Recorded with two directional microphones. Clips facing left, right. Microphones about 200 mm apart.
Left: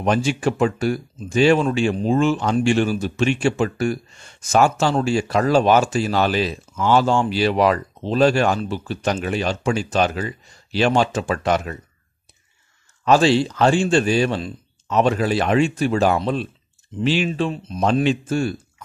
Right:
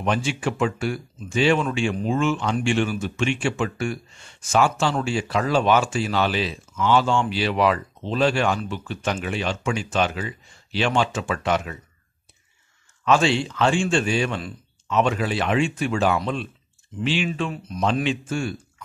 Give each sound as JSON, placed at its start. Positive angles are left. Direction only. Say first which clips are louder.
{"t": 0.0, "sound": "speech", "louder": "left 5 dB", "side_deg": 40}
{"t": 13.0, "sound": "speech", "louder": "left 4 dB", "side_deg": 35}
{"t": 17.3, "sound": "speech", "louder": "left 4 dB", "side_deg": 25}
{"t": 18.0, "sound": "speech", "louder": "left 5 dB", "side_deg": 40}